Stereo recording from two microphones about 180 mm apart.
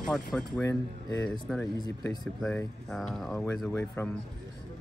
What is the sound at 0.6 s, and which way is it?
Speech, 15° left (ahead or behind).